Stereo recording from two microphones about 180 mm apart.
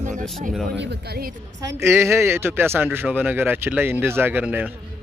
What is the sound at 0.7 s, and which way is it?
Speech, 70° right (ahead or behind).